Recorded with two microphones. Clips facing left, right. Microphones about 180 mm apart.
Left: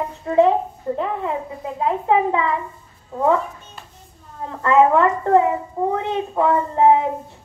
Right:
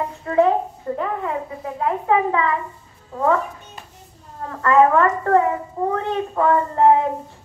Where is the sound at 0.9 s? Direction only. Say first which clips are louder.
Even; 20° left (ahead or behind).